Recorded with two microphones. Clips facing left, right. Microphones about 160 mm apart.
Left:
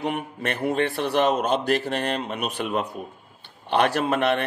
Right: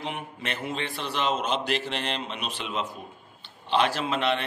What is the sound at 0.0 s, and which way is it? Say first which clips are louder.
A man's voice: left 7 dB; 55° left (ahead or behind).